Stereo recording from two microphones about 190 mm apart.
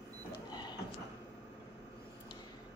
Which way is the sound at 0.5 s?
20° left (ahead or behind).